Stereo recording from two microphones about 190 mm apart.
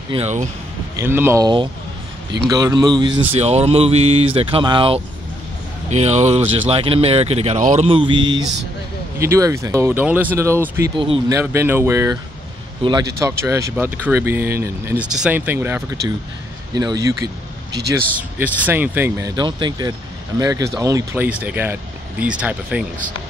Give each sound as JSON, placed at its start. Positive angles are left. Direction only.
{"t": 0.1, "sound": "speech", "side_deg": -35}
{"t": 0.9, "sound": "speech", "side_deg": -10}
{"t": 3.3, "sound": "speech", "side_deg": -35}
{"t": 9.2, "sound": "speech", "side_deg": -15}
{"t": 11.0, "sound": "speech", "side_deg": -25}
{"t": 11.3, "sound": "speech", "side_deg": -15}
{"t": 13.2, "sound": "speech", "side_deg": -15}